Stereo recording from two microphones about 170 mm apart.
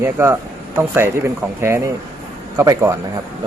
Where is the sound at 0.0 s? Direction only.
15° right (ahead or behind).